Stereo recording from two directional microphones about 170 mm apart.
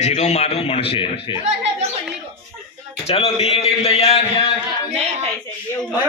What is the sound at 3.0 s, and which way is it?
A man's voice, 35° left (ahead or behind).